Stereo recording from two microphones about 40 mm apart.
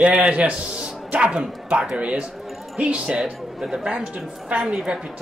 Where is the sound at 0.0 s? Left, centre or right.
Right.